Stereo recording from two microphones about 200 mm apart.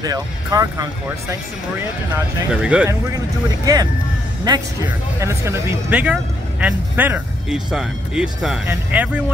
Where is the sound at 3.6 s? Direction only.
20° right (ahead or behind).